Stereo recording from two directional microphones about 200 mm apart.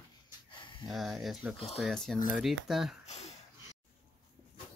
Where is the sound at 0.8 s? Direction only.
Centre (ahead or behind).